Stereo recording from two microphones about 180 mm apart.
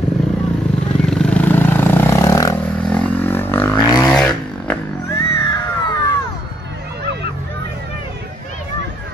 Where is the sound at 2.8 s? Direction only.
5° left (ahead or behind).